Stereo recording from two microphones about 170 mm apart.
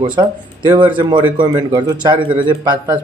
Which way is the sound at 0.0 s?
25° right (ahead or behind).